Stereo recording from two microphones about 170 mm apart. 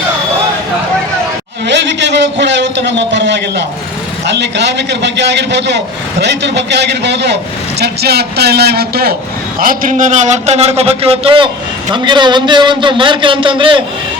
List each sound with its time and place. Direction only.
1.6 s a man's voice: 90° right
7.8 s a man's voice: 70° right (ahead or behind)
9.6 s a man's voice: 55° right (ahead or behind); by 13.8 s 30° right (ahead or behind)